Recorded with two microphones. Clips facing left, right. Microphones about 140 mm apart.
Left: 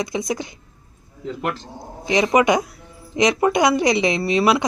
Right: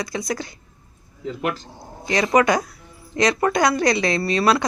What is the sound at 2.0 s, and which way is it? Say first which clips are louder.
Speech: left 1 dB; 15° left (ahead or behind).